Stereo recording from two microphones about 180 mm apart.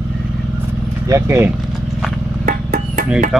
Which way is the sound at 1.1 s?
15° right (ahead or behind).